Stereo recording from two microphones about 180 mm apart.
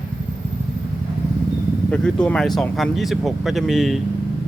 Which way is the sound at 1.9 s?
5° left (ahead or behind).